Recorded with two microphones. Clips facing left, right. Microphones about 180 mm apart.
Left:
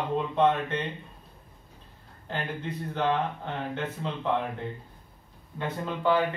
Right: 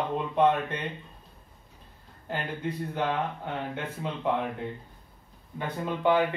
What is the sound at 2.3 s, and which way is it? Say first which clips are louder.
Speech: right 1 dB; 10° right (ahead or behind).